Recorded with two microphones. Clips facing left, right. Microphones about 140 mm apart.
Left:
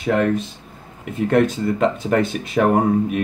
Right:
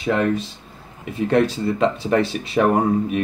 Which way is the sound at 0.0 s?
50° left (ahead or behind).